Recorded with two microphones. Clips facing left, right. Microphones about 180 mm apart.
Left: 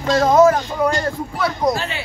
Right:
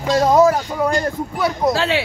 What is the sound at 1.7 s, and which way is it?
Speech, 90° right.